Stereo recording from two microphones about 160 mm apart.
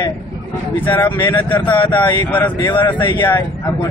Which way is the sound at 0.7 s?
10° left (ahead or behind).